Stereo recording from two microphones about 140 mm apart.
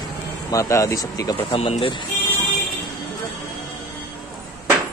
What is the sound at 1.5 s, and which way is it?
Speech, 45° left (ahead or behind).